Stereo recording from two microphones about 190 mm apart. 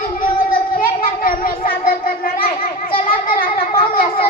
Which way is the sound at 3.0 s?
50° left (ahead or behind).